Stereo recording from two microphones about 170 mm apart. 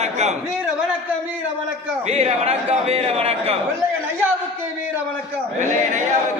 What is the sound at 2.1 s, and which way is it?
A man's voice, 35° right (ahead or behind).